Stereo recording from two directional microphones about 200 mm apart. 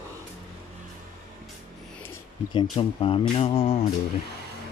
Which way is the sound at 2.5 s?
25° left (ahead or behind).